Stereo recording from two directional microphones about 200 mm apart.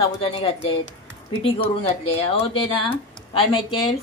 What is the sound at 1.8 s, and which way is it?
A woman's voice, 30° left (ahead or behind).